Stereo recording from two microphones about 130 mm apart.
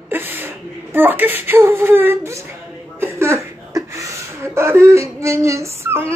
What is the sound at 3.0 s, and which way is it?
Chuckle, 20° right (ahead or behind).